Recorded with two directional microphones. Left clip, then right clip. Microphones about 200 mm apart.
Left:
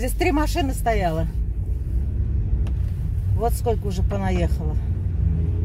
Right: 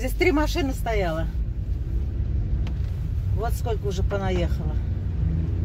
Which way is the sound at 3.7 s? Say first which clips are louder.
Left 3 dB; 25° left (ahead or behind).